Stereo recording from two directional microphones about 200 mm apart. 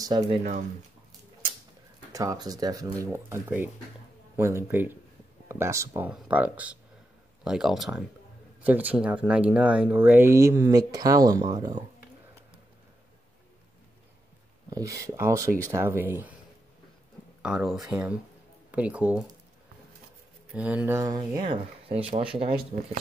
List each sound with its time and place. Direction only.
0.0 s speech: 20° right (ahead or behind)
0.4 s speech: 40° right (ahead or behind)
2.1 s speech: 20° right (ahead or behind)
14.7 s speech: 15° right (ahead or behind)
17.4 s speech: 5° right (ahead or behind)
20.5 s speech: 5° right (ahead or behind); by 22.9 s 30° right (ahead or behind)